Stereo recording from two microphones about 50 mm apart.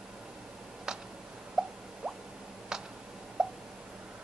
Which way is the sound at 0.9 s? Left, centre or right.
Centre.